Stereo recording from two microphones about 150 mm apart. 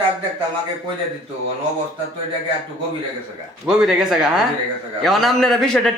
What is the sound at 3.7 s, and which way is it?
Speech, 5° right (ahead or behind).